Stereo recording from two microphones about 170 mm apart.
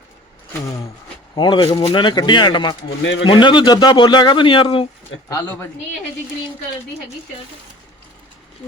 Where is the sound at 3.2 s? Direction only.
30° left (ahead or behind).